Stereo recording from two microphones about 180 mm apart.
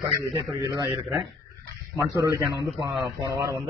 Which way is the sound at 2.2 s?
20° right (ahead or behind).